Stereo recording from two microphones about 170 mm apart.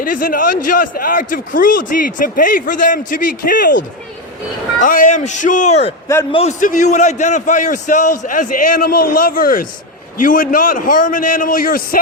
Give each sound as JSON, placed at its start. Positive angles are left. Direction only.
{"t": 0.0, "sound": "a man's voice", "side_deg": 55}